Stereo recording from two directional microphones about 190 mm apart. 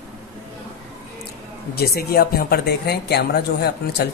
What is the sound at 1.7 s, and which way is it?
Speech, 55° left (ahead or behind).